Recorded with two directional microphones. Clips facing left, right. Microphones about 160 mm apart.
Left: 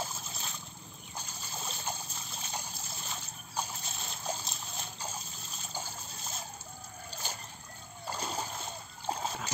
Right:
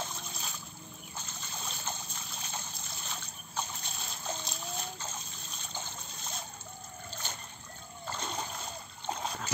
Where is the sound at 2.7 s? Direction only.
5° left (ahead or behind).